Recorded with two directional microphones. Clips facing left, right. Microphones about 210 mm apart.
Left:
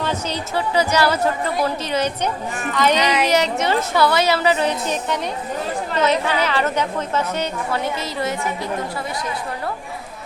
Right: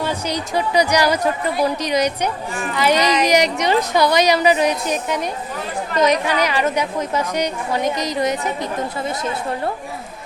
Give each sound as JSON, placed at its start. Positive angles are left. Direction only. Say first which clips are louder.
{"t": 0.0, "sound": "a woman's voice", "louder": "right 1 dB", "side_deg": -10}